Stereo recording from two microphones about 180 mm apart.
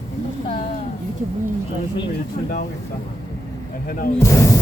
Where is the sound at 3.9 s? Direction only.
50° left (ahead or behind).